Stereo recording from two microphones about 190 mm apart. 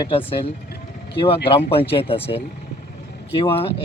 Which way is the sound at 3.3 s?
30° left (ahead or behind).